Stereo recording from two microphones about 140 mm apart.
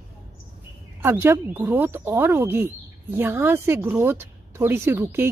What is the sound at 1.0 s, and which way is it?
Speech, 15° right (ahead or behind).